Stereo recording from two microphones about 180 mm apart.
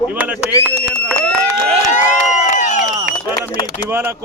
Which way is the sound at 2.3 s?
40° left (ahead or behind).